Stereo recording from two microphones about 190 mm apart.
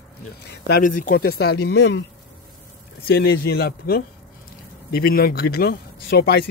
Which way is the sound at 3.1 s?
55° left (ahead or behind).